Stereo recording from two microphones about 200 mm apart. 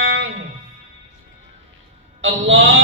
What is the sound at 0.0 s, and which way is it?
Music, 70° right (ahead or behind).